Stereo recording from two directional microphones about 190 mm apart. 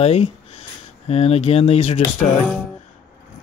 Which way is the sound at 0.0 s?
35° left (ahead or behind).